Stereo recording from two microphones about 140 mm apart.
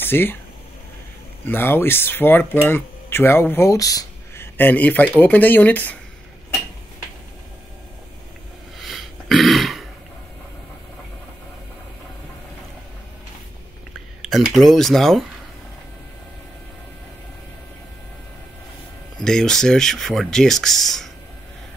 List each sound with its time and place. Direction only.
0.0 s speech: 15° left (ahead or behind)
1.4 s speech: 15° left (ahead or behind)
4.6 s speech: 15° left (ahead or behind)
8.7 s throat clearing: centre (ahead or behind)
14.2 s speech: centre (ahead or behind)
19.2 s speech: 5° left (ahead or behind)